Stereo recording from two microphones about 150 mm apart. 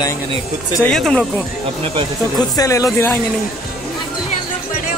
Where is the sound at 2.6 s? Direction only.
20° left (ahead or behind).